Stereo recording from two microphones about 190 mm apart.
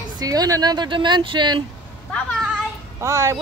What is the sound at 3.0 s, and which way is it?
Speech, 15° right (ahead or behind).